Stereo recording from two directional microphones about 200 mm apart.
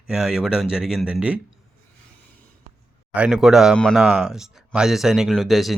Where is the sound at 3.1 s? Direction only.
5° right (ahead or behind).